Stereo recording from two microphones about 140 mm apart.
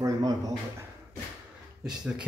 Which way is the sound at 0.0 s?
25° right (ahead or behind).